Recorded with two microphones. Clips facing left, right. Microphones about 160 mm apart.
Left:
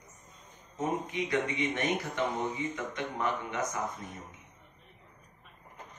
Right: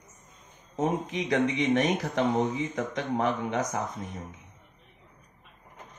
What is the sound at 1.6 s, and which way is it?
Speech, 80° right.